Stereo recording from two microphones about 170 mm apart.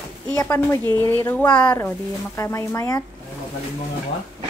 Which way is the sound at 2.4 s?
20° left (ahead or behind).